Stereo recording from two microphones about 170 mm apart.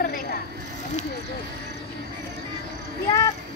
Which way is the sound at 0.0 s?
60° left (ahead or behind).